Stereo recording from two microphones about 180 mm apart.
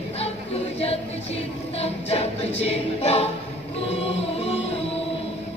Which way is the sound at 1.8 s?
35° left (ahead or behind).